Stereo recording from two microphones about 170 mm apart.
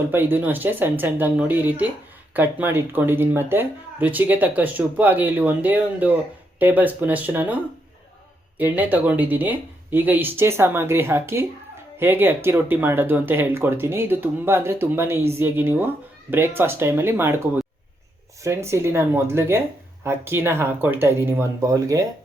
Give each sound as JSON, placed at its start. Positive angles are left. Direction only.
{"t": 0.1, "sound": "speech", "side_deg": -10}